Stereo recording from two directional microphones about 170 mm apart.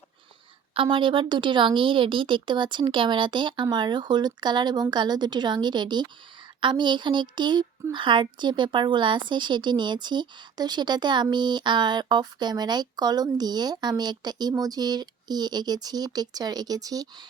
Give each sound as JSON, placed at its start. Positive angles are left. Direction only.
{"t": 0.7, "sound": "a woman's voice", "side_deg": -30}